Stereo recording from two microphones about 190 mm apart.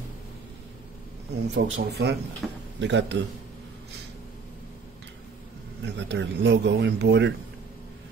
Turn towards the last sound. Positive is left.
turn(degrees=-65)  # may be behind; listen again after turning